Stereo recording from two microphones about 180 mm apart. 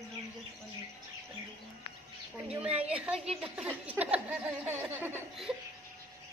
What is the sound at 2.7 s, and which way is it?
Speech, 35° right (ahead or behind).